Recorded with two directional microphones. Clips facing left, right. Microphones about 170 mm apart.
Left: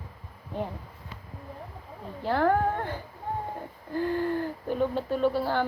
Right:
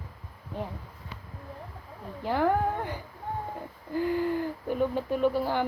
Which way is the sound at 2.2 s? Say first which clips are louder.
Left 1 dB; 10° right (ahead or behind).